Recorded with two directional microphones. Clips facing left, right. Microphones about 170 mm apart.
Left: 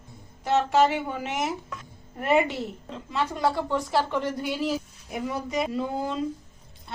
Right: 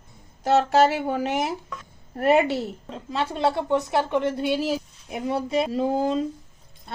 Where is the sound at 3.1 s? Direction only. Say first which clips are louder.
Right 2 dB; 30° right (ahead or behind).